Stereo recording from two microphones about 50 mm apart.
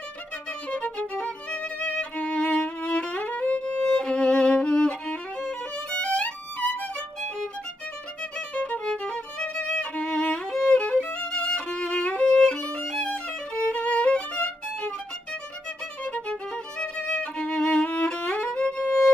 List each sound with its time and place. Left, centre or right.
0.7 s violin: left
8.2 s violin: left
16.0 s music: centre